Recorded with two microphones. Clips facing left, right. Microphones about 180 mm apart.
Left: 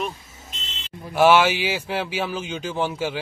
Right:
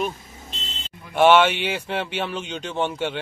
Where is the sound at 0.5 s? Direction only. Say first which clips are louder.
Right 2 dB; 35° right (ahead or behind).